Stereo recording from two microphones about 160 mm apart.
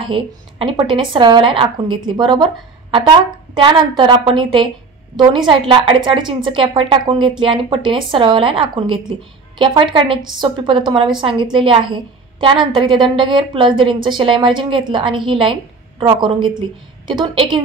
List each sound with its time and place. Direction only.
0.1 s a woman's voice: 30° right (ahead or behind)